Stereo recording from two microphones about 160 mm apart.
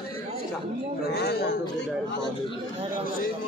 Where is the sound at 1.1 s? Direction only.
90° left.